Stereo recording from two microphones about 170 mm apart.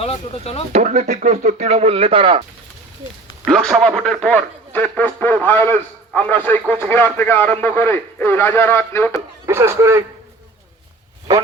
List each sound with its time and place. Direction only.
0.0 s speech: 35° left (ahead or behind)
0.7 s speech: 45° right (ahead or behind)
3.4 s speech: centre (ahead or behind)
9.5 s a man's voice: 15° right (ahead or behind)